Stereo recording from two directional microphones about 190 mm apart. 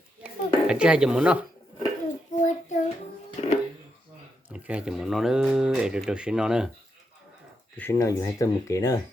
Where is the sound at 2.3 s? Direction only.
40° left (ahead or behind).